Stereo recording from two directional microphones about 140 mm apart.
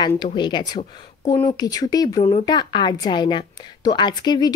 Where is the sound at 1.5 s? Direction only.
25° left (ahead or behind).